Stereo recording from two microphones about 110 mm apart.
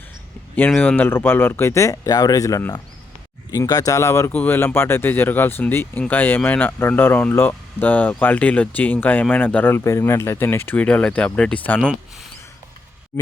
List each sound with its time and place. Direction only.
0.8 s speech: 15° left (ahead or behind)